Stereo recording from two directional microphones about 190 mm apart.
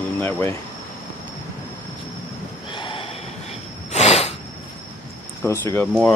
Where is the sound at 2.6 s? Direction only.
25° left (ahead or behind).